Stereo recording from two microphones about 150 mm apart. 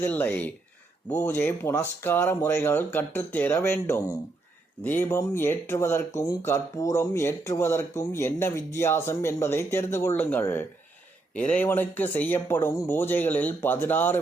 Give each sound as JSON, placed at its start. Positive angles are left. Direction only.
{"t": 0.0, "sound": "speech", "side_deg": 10}